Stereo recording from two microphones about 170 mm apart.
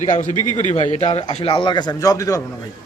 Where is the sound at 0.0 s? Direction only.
45° left (ahead or behind); by 2.4 s 20° left (ahead or behind).